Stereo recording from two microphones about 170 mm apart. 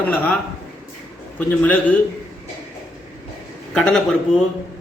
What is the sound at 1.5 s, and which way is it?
Speech, 10° left (ahead or behind).